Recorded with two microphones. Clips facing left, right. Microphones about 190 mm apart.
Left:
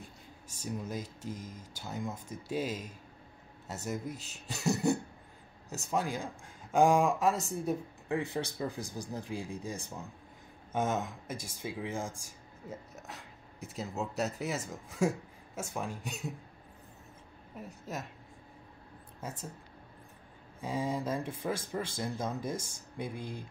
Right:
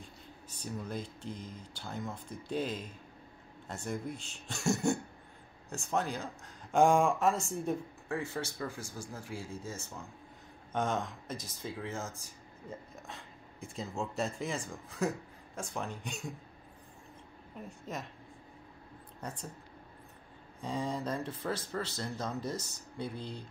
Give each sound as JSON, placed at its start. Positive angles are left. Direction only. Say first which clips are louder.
{"t": 0.6, "sound": "speech", "louder": "left 1 dB", "side_deg": 10}
{"t": 2.1, "sound": "speech", "louder": "left 1 dB", "side_deg": 45}
{"t": 2.4, "sound": "speech", "louder": "even", "side_deg": 10}
{"t": 4.5, "sound": "a sound", "louder": "left 1 dB", "side_deg": 0}
{"t": 5.9, "sound": "speech", "louder": "left 1 dB", "side_deg": 10}
{"t": 8.1, "sound": "speech", "louder": "left 3 dB", "side_deg": 15}
{"t": 17.6, "sound": "speech", "louder": "left 1 dB", "side_deg": 5}
{"t": 19.2, "sound": "speech", "louder": "left 1 dB", "side_deg": 5}
{"t": 20.6, "sound": "speech", "louder": "left 2 dB", "side_deg": 5}